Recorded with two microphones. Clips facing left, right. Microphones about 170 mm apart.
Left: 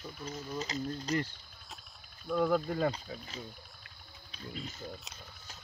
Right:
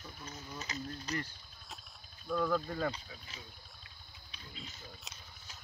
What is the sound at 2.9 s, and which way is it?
Speech, 40° left (ahead or behind).